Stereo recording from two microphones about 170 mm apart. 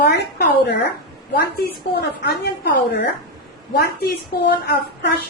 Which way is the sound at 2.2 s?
70° left (ahead or behind).